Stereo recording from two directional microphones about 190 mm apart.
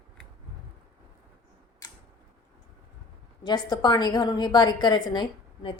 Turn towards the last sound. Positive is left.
turn(degrees=25)  # may be behind; listen again after turning